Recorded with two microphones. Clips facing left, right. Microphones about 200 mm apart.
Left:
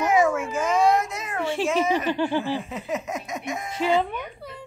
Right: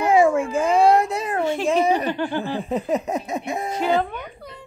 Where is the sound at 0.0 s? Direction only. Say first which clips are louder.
Right 4 dB; 30° right (ahead or behind).